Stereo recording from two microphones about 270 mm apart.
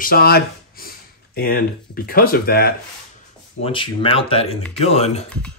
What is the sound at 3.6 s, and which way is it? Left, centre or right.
Speech, centre.